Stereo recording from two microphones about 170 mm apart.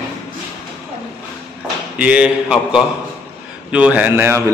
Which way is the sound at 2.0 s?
5° right (ahead or behind).